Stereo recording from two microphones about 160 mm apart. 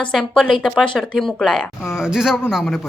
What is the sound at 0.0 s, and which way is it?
Speech, 5° left (ahead or behind).